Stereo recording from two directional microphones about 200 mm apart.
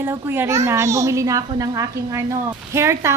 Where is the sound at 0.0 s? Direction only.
10° right (ahead or behind).